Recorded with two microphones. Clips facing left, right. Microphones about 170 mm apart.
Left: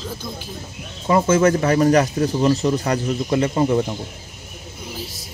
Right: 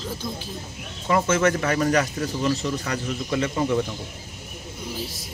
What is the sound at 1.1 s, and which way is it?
Speech, 30° left (ahead or behind).